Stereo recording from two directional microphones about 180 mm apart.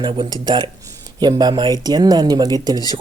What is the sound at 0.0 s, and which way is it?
Speech, 25° right (ahead or behind).